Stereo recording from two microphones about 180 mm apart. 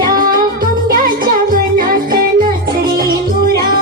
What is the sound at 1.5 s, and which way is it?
Music, 50° right (ahead or behind).